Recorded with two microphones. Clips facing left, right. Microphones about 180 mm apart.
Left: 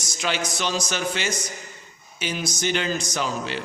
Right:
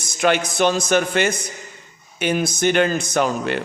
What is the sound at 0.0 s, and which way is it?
A man's voice, 55° right (ahead or behind).